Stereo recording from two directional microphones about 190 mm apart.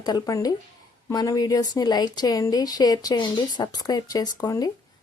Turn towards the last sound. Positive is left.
turn(degrees=20)  # may be behind; listen again after turning